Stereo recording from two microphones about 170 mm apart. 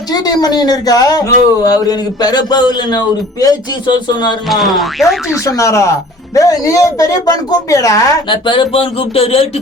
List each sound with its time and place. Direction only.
0.1 s speech: 25° left (ahead or behind)
4.4 s speech: centre (ahead or behind)
5.3 s speech: 20° left (ahead or behind); by 9.5 s 35° left (ahead or behind)